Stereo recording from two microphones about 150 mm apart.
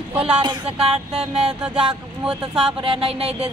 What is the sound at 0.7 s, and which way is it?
Speech, 5° right (ahead or behind).